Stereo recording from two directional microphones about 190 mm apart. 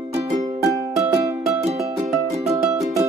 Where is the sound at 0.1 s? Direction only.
25° right (ahead or behind).